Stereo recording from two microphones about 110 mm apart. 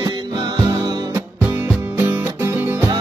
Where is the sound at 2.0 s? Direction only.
15° right (ahead or behind).